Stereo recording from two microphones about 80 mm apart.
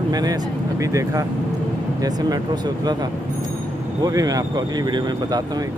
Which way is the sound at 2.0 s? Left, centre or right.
Right.